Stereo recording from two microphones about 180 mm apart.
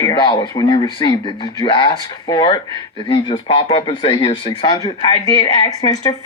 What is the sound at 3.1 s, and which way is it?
Speech, 25° left (ahead or behind).